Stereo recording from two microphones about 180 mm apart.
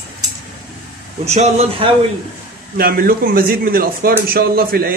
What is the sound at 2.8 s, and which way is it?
A man's voice, 50° right (ahead or behind).